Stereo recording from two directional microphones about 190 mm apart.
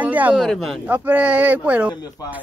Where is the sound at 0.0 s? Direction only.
10° right (ahead or behind).